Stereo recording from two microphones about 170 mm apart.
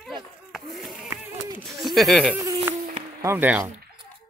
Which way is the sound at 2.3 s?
15° right (ahead or behind).